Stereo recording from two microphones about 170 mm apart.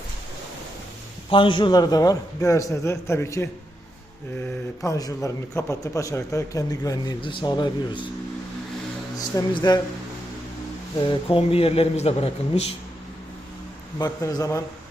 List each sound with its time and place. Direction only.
1.3 s a man's voice: 30° left (ahead or behind)
4.8 s a man's voice: 20° left (ahead or behind)
9.1 s a man's voice: 25° left (ahead or behind)
11.0 s a man's voice: 30° left (ahead or behind)
14.0 s a man's voice: 20° left (ahead or behind)